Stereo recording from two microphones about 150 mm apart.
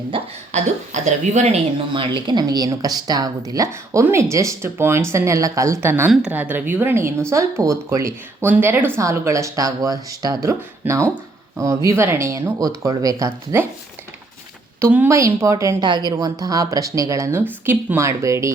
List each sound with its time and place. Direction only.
0.1 s speech: 35° right (ahead or behind)
0.5 s speech: 55° right (ahead or behind)
1.9 s a woman's voice: 35° right (ahead or behind)
14.8 s speech: 15° right (ahead or behind)